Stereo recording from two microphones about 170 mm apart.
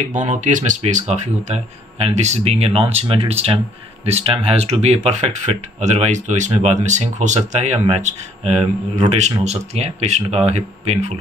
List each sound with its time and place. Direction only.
0.0 s speech: 45° right (ahead or behind)